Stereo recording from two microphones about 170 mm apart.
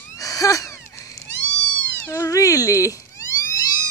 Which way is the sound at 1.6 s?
5° left (ahead or behind).